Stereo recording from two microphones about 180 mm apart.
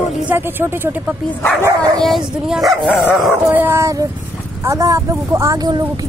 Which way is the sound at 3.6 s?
15° right (ahead or behind).